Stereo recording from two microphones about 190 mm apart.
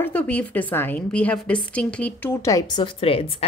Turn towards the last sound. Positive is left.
turn(degrees=30)  # may be behind; listen again after turning